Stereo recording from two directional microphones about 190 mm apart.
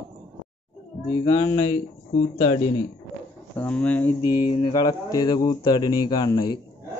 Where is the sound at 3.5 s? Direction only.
5° left (ahead or behind).